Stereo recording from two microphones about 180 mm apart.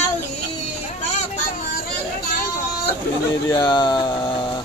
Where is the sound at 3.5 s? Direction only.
25° left (ahead or behind).